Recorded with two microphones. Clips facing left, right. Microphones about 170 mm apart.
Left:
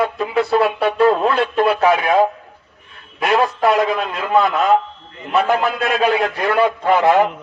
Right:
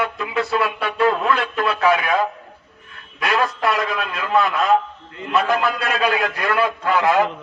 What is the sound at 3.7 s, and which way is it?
Speech, 30° left (ahead or behind).